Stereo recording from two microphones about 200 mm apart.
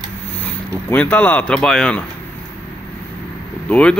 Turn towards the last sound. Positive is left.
turn(degrees=5)  # may be behind; listen again after turning